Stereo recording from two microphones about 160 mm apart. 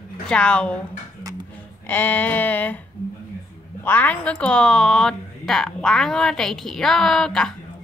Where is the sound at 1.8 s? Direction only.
10° left (ahead or behind).